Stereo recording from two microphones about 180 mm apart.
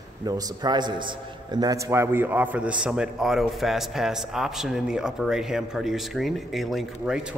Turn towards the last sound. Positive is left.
turn(degrees=0)  # may be behind; listen again after turning